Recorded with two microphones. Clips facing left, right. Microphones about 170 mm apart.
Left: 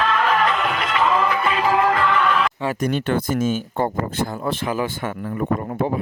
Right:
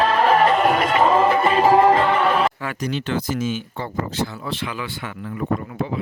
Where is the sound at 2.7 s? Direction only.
50° left (ahead or behind).